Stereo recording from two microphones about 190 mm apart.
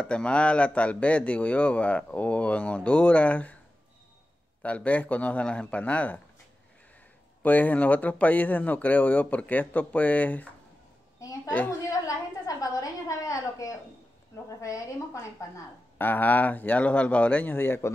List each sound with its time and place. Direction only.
0.0 s a man's voice: 5° left (ahead or behind)
4.6 s a man's voice: 5° left (ahead or behind)
7.4 s a man's voice: 10° left (ahead or behind)
11.1 s a sound: 15° left (ahead or behind)
14.6 s a man's voice: 15° left (ahead or behind)